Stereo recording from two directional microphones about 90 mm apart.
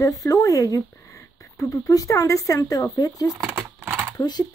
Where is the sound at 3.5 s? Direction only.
20° right (ahead or behind).